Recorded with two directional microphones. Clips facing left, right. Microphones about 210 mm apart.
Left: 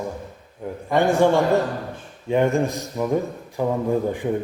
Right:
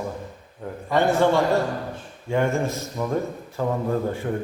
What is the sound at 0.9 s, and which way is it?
A man's voice, 15° left (ahead or behind).